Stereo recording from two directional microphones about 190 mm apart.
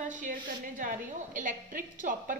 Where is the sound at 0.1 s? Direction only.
45° right (ahead or behind).